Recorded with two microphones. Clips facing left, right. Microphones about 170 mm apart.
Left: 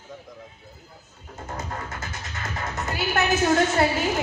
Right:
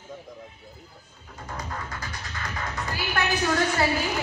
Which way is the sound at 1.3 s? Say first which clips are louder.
Left 2 dB; 25° left (ahead or behind).